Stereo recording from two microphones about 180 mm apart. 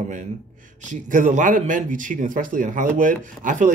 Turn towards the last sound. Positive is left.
turn(degrees=-45)  # may be behind; listen again after turning